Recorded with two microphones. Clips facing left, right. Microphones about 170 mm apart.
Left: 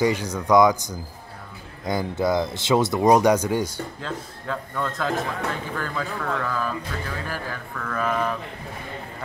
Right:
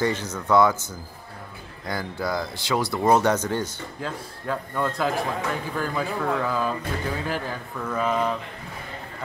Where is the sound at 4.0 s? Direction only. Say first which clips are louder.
Even; 10° right (ahead or behind).